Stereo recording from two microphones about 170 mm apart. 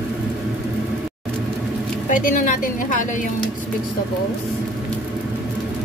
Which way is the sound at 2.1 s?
50° left (ahead or behind).